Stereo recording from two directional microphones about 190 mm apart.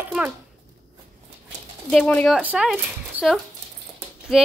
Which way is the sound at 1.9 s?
5° left (ahead or behind).